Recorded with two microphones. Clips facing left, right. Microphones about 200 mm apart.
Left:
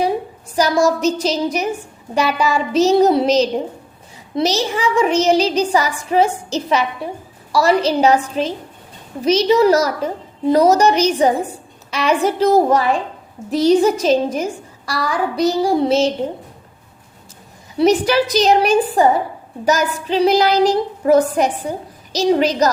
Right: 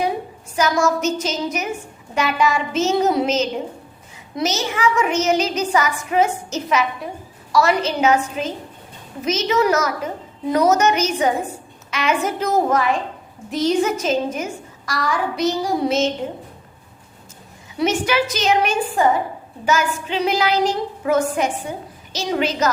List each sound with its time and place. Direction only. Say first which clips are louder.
0.5 s child singing: left 3 dB; 35° left (ahead or behind)
17.7 s child singing: left 5 dB; 35° left (ahead or behind)
21.7 s a woman's voice: left 4 dB; 35° left (ahead or behind)